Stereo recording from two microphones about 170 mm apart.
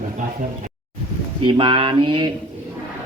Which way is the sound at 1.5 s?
30° right (ahead or behind).